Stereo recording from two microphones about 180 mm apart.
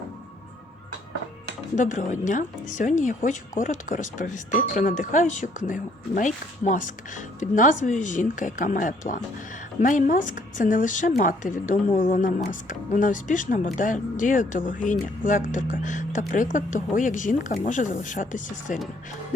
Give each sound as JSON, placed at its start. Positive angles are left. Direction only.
{"t": 1.7, "sound": "speech", "side_deg": 45}